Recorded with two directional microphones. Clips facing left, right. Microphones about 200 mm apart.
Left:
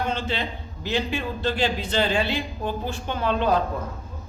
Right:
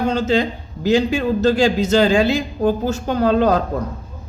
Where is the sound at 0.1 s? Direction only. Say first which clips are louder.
Right 10 dB; 40° right (ahead or behind).